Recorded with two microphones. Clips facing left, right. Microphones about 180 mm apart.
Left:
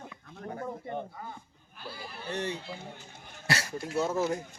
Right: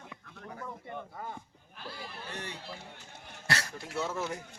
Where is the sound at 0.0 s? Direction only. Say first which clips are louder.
Left 5 dB; 45° left (ahead or behind).